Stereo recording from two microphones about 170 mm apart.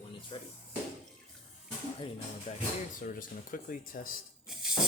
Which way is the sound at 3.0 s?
55° left (ahead or behind).